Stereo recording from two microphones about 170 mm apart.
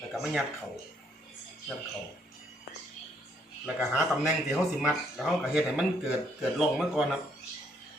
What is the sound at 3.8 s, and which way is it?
Speech, centre (ahead or behind).